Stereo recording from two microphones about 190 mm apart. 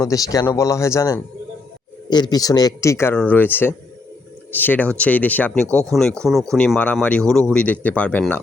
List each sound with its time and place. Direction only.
0.0 s speech: 20° left (ahead or behind)